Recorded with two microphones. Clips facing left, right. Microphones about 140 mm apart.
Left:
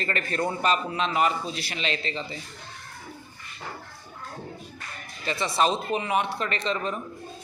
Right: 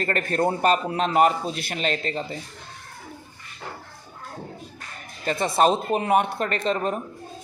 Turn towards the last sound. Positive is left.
turn(degrees=-45)  # may be behind; listen again after turning